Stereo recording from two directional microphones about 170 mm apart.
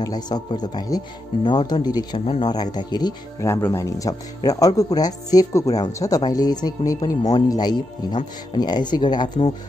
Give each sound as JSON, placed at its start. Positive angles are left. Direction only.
{"t": 0.0, "sound": "speech", "side_deg": 25}